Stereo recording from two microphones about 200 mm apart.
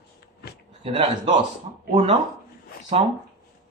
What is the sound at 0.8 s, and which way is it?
Speech, 25° right (ahead or behind).